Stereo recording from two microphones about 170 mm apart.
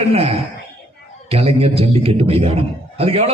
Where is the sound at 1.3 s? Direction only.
35° right (ahead or behind).